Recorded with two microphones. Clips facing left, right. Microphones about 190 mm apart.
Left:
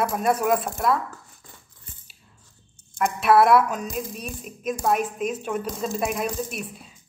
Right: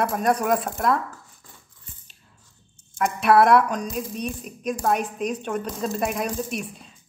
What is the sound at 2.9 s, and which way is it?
Speech, centre (ahead or behind).